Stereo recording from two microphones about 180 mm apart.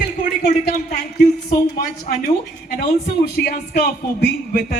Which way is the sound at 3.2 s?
60° left (ahead or behind).